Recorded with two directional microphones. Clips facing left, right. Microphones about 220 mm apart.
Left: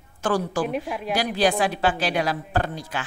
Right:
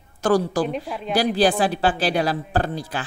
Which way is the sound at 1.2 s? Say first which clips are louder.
Right 4 dB; 35° right (ahead or behind).